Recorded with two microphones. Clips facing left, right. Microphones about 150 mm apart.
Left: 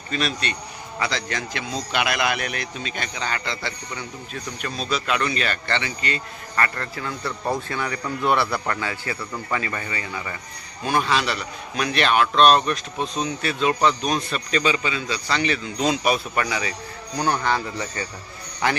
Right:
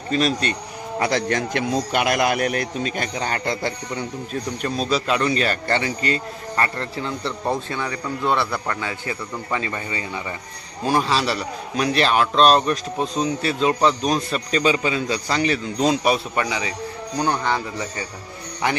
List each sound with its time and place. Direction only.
0.1 s speech: 40° right (ahead or behind)
6.5 s a man's voice: 25° right (ahead or behind)
8.2 s a man's voice: 15° left (ahead or behind)
8.6 s a man's voice: 20° right (ahead or behind); by 16.1 s 40° right (ahead or behind)
16.3 s a man's voice: 20° right (ahead or behind)